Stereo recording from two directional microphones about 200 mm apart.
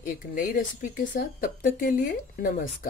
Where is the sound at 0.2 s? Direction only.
45° left (ahead or behind).